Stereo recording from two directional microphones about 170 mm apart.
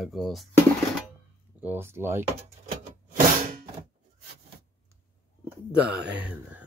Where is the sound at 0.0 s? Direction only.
Centre (ahead or behind).